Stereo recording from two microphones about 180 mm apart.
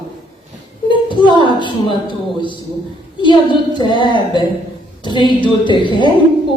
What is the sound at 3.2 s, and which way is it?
Speech, 25° left (ahead or behind).